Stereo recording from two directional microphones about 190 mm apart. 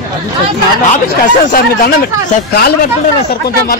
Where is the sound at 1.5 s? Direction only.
50° left (ahead or behind).